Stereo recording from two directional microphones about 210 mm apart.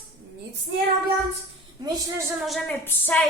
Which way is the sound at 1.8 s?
20° right (ahead or behind).